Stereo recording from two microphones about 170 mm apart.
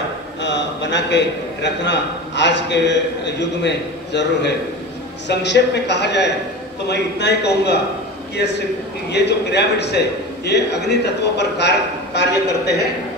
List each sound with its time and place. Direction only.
0.4 s a man's voice: 90° left